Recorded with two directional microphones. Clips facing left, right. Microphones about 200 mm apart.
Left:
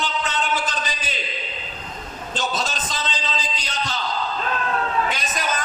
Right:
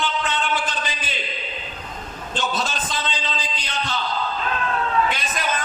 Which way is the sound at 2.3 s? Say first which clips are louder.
Right 1 dB; 40° left (ahead or behind).